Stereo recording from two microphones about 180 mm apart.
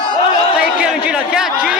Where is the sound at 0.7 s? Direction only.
5° right (ahead or behind).